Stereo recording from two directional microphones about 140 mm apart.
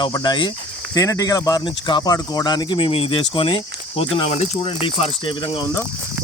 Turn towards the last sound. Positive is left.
turn(degrees=35)  # may be behind; listen again after turning